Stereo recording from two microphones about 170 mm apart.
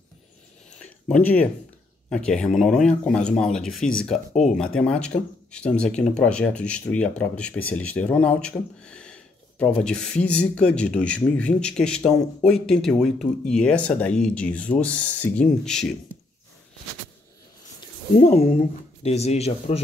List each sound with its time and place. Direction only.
0.7 s a sound: 10° left (ahead or behind)
2.0 s speech: 5° left (ahead or behind)
4.3 s speech: 45° left (ahead or behind)
4.7 s speech: 5° left (ahead or behind)
18.1 s speech: 50° left (ahead or behind)
19.0 s speech: 40° left (ahead or behind)